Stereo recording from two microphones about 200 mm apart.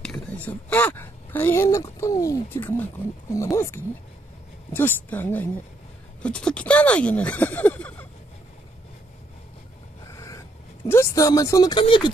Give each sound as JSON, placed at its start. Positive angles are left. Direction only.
{"t": 0.0, "sound": "speech", "side_deg": 5}
{"t": 10.1, "sound": "vehicle", "side_deg": 15}
{"t": 10.9, "sound": "speech", "side_deg": 15}